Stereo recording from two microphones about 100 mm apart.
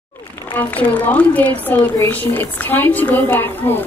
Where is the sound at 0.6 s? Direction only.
15° left (ahead or behind).